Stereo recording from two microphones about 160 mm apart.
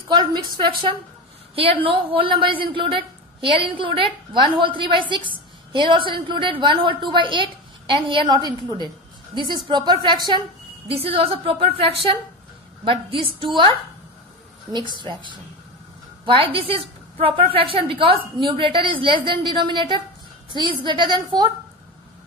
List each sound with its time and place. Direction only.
0.1 s a woman's voice: 25° right (ahead or behind)
16.3 s a woman's voice: 35° right (ahead or behind)